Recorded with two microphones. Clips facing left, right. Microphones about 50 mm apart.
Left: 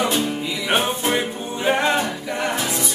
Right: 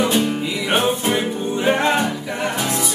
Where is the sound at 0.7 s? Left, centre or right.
Centre.